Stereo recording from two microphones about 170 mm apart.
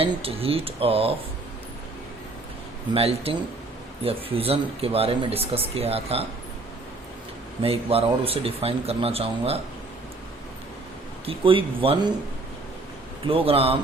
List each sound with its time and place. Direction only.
0.0 s speech: 35° right (ahead or behind)
2.9 s speech: 35° right (ahead or behind)
7.6 s speech: 35° right (ahead or behind)
11.3 s speech: 30° right (ahead or behind)
13.2 s speech: 35° right (ahead or behind)